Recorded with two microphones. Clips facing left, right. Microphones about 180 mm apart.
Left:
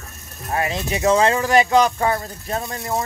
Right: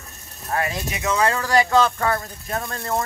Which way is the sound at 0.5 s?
25° left (ahead or behind).